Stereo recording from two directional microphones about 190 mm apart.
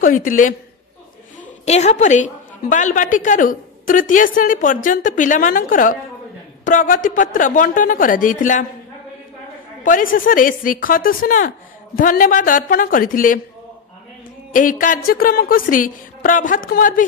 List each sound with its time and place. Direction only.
0.0 s speech: 45° left (ahead or behind)
1.7 s speech: 35° left (ahead or behind)
9.8 s speech: 45° left (ahead or behind)
14.5 s speech: 45° left (ahead or behind)